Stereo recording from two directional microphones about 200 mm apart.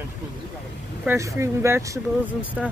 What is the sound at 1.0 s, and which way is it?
Speech, 15° right (ahead or behind).